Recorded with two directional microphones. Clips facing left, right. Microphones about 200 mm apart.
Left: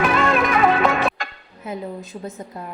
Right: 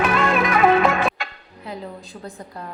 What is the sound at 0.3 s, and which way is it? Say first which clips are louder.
Music: right 1 dB; centre (ahead or behind).